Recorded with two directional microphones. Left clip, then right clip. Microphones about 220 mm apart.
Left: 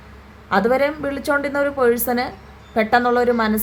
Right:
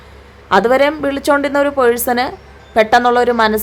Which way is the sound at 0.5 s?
30° right (ahead or behind).